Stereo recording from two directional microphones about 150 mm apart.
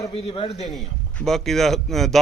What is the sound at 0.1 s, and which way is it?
Speech, 40° left (ahead or behind).